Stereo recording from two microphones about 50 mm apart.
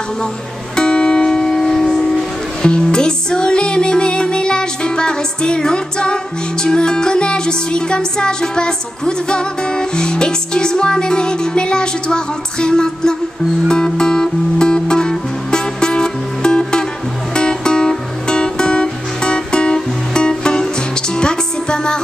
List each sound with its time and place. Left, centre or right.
0.7 s music: centre